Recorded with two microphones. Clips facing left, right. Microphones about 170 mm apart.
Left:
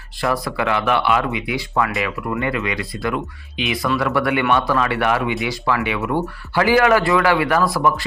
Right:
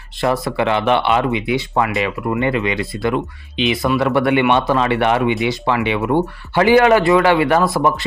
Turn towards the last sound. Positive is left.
turn(degrees=-25)  # may be behind; listen again after turning